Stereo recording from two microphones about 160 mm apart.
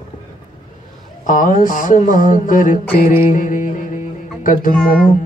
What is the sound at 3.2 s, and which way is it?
Music, 55° left (ahead or behind).